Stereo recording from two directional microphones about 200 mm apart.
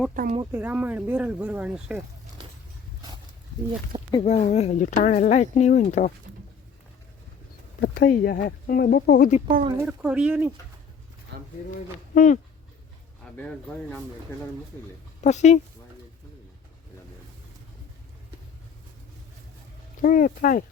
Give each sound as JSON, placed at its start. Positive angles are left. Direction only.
{"t": 0.1, "sound": "speech", "side_deg": -40}
{"t": 0.5, "sound": "speech", "side_deg": -10}
{"t": 4.2, "sound": "speech", "side_deg": 35}
{"t": 7.8, "sound": "speech", "side_deg": 45}
{"t": 9.8, "sound": "speech", "side_deg": -5}
{"t": 11.3, "sound": "a sound", "side_deg": -55}
{"t": 12.1, "sound": "speech", "side_deg": 40}
{"t": 13.2, "sound": "speech", "side_deg": 5}
{"t": 15.2, "sound": "speech", "side_deg": 35}
{"t": 20.0, "sound": "speech", "side_deg": 40}